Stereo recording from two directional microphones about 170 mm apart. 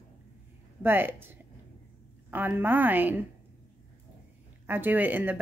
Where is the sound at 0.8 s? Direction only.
10° right (ahead or behind).